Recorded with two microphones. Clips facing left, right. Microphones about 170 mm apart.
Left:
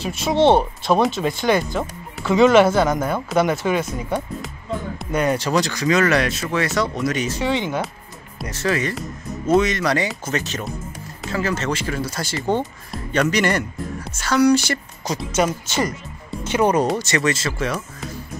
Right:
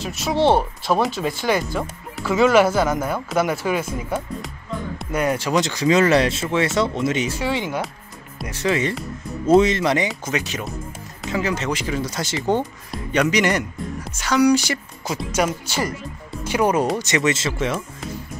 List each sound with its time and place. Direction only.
0.0 s speech: centre (ahead or behind)
5.6 s speech: 25° right (ahead or behind)
7.2 s speech: 5° right (ahead or behind)
15.6 s speech: 20° left (ahead or behind)
16.5 s speech: 5° right (ahead or behind)
17.0 s speech: 20° right (ahead or behind)